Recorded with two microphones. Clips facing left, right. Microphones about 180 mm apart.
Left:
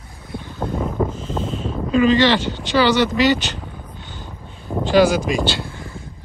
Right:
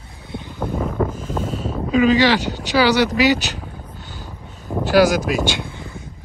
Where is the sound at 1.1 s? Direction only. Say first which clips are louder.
Even; 10° right (ahead or behind).